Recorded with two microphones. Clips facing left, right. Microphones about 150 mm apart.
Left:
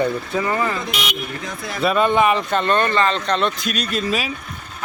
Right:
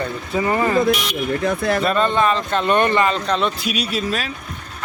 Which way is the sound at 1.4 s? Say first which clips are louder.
Right 10 dB; 60° right (ahead or behind).